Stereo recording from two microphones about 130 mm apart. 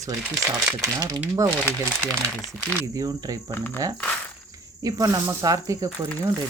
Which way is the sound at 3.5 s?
15° left (ahead or behind).